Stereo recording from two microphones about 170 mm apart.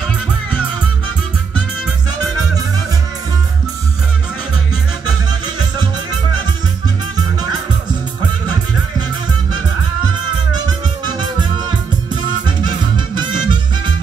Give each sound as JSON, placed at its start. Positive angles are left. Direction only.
{"t": 12.4, "sound": "music", "side_deg": -25}